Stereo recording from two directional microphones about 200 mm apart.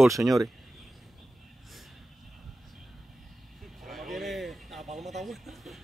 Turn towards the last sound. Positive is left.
turn(degrees=0)  # may be behind; listen again after turning